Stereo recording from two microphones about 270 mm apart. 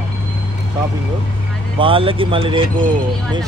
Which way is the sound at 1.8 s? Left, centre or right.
Centre.